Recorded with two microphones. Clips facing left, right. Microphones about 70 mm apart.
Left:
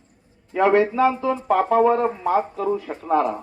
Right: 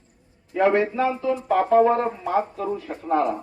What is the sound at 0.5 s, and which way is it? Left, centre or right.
Speech, left.